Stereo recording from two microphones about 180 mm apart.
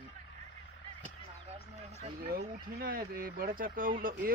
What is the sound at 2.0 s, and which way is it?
Speech, 50° right (ahead or behind).